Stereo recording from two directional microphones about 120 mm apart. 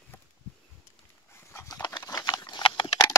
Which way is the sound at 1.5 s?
25° left (ahead or behind).